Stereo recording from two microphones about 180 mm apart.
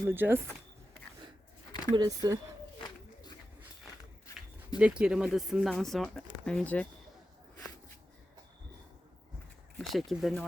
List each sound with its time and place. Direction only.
0.0 s speech: 10° right (ahead or behind)
2.0 s speech: 20° right (ahead or behind)
4.8 s speech: 5° right (ahead or behind)
9.7 s speech: centre (ahead or behind)